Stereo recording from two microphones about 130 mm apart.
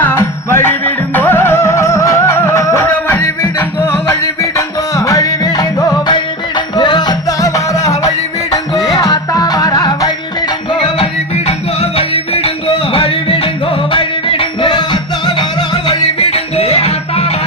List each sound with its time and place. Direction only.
0.0 s music: 20° left (ahead or behind)
10.8 s music: 45° left (ahead or behind)
15.9 s music: 50° left (ahead or behind)